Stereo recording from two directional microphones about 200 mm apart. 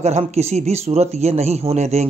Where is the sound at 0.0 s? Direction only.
35° right (ahead or behind).